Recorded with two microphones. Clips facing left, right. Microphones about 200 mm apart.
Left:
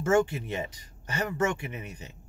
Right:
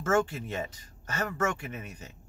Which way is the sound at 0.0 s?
15° left (ahead or behind).